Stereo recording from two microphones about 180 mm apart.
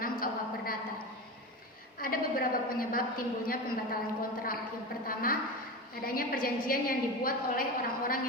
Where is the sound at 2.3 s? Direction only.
50° left (ahead or behind).